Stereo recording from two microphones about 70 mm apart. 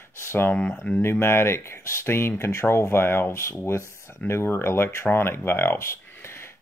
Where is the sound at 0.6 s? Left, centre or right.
Centre.